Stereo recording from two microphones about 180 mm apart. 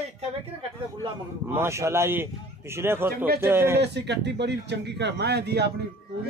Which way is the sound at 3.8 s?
70° right (ahead or behind).